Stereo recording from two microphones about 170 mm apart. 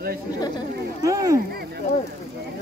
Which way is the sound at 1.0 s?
20° right (ahead or behind).